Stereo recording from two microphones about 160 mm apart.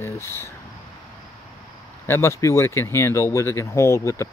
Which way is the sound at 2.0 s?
15° left (ahead or behind).